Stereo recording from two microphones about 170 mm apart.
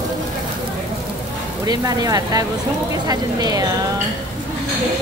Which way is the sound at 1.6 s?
20° right (ahead or behind).